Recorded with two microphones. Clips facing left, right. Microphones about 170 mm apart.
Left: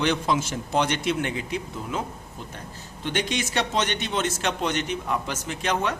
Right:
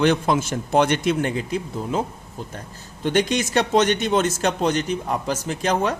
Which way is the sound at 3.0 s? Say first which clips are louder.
Right 7 dB; 45° right (ahead or behind).